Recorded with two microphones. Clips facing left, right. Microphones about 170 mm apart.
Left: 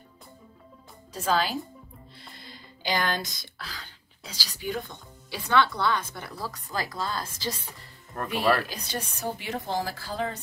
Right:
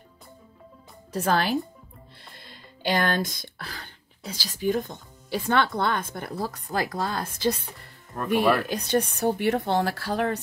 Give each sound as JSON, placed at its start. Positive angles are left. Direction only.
{"t": 1.1, "sound": "speech", "side_deg": -60}
{"t": 2.9, "sound": "speech", "side_deg": -55}
{"t": 8.6, "sound": "speech", "side_deg": -55}